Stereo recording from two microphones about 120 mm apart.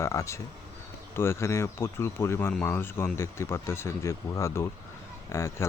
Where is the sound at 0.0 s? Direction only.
25° left (ahead or behind).